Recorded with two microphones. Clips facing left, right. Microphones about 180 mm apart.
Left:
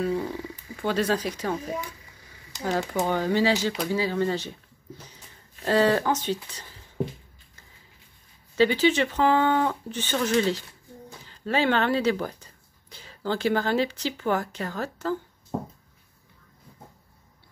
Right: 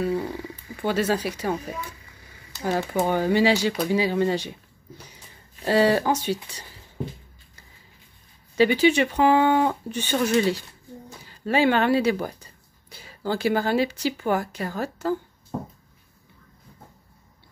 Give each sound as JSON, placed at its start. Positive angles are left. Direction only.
{"t": 0.0, "sound": "speech", "side_deg": -5}
{"t": 2.5, "sound": "speech", "side_deg": 15}
{"t": 2.9, "sound": "speech", "side_deg": -10}
{"t": 8.5, "sound": "speech", "side_deg": -15}